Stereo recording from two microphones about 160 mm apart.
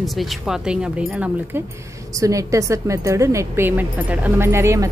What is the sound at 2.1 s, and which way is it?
A woman's voice, 20° right (ahead or behind).